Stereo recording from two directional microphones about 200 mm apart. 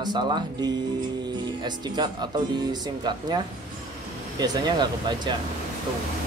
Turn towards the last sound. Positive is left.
turn(degrees=-20)  # may be behind; listen again after turning